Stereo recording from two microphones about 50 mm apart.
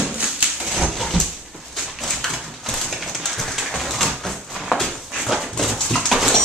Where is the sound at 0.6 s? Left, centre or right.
Centre.